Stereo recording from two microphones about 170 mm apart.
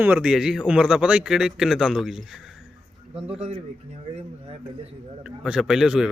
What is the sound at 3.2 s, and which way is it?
A man's voice, 35° right (ahead or behind).